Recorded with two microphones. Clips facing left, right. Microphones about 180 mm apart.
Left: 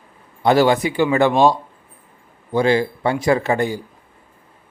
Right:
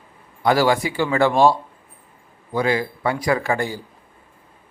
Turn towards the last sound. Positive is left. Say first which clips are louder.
# left 3 dB
turn(degrees=20)  # may be behind; listen again after turning